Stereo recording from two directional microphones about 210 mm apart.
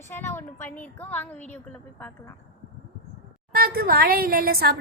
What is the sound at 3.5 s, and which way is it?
A woman's voice, 45° right (ahead or behind).